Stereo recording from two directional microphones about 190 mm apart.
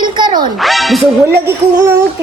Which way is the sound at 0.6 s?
Centre (ahead or behind).